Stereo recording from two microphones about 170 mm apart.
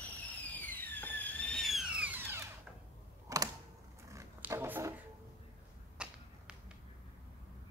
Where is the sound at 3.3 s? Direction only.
20° right (ahead or behind).